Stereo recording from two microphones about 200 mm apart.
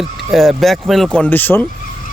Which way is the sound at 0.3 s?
Centre (ahead or behind).